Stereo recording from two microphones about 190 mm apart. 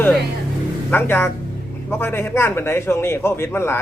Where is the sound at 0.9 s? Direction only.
10° left (ahead or behind).